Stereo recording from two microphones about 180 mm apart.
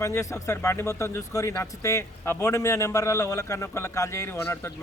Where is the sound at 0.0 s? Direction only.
15° left (ahead or behind).